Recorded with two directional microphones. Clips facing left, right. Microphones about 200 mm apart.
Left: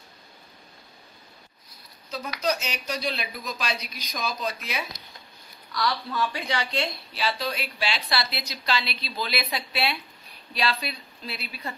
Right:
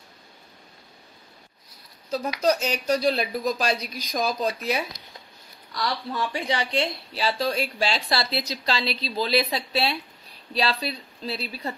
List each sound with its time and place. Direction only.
2.0 s speech: 40° right (ahead or behind)
5.8 s speech: 25° right (ahead or behind)
7.2 s speech: 35° right (ahead or behind)